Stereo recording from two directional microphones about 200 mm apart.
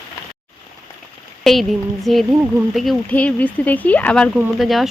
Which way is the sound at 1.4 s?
Centre (ahead or behind).